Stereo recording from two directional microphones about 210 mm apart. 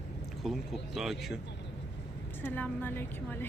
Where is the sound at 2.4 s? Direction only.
10° left (ahead or behind).